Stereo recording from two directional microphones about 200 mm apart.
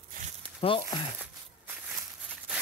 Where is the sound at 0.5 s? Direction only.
25° left (ahead or behind).